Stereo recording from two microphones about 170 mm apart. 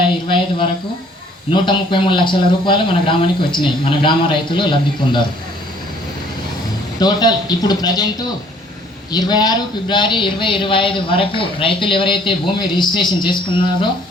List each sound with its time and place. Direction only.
0.3 s a sound: 30° left (ahead or behind)
1.5 s a man's voice: 30° left (ahead or behind)
7.0 s a man's voice: 25° left (ahead or behind)
9.1 s a man's voice: 25° left (ahead or behind)